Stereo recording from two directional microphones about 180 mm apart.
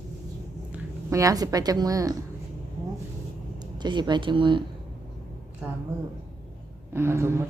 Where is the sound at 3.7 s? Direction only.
25° right (ahead or behind).